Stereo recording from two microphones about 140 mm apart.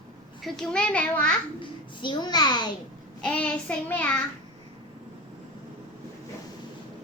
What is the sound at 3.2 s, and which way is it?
Child singing, 10° left (ahead or behind).